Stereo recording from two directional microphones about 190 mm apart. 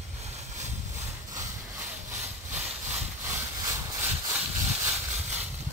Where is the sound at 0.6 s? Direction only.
40° right (ahead or behind).